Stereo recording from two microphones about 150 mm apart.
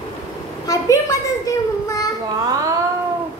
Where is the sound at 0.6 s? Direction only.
20° left (ahead or behind).